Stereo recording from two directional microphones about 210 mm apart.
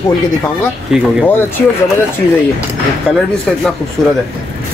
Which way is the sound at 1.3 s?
10° left (ahead or behind).